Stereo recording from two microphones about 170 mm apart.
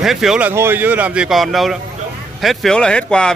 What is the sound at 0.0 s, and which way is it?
Speech, centre (ahead or behind).